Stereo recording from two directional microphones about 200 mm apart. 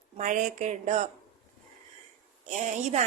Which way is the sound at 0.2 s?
40° right (ahead or behind).